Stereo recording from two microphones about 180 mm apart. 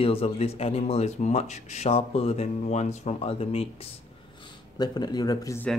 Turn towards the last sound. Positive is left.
turn(degrees=20)  # may be behind; listen again after turning